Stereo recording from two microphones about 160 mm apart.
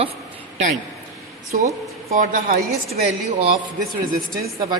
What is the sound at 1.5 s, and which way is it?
A woman's voice, 60° right (ahead or behind).